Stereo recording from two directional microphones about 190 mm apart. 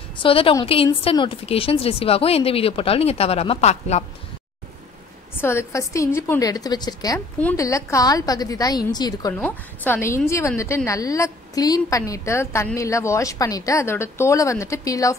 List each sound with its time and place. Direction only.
0.2 s a woman's voice: 30° left (ahead or behind)
5.4 s a woman's voice: 15° left (ahead or behind)